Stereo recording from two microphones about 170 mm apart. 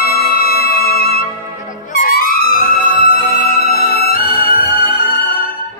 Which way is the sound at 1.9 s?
60° left (ahead or behind).